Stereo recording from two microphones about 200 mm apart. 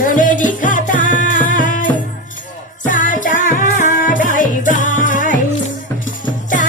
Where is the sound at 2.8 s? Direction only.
40° left (ahead or behind).